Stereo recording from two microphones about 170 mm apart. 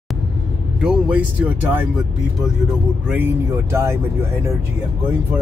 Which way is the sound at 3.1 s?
10° right (ahead or behind).